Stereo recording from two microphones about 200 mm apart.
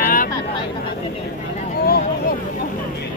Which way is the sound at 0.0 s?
45° left (ahead or behind).